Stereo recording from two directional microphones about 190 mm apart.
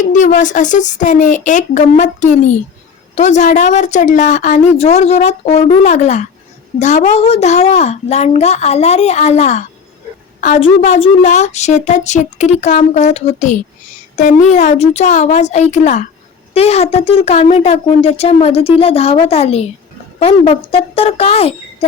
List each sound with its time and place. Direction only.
0.1 s a woman's voice: 40° left (ahead or behind)